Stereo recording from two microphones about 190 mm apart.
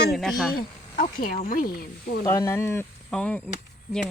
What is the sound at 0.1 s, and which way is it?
Speech, centre (ahead or behind).